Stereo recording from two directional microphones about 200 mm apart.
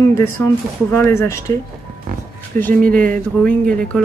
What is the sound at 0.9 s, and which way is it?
Speech, 15° left (ahead or behind).